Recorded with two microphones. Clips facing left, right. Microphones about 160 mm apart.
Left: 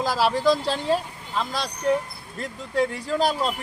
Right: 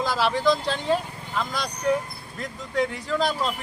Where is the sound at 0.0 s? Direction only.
35° left (ahead or behind).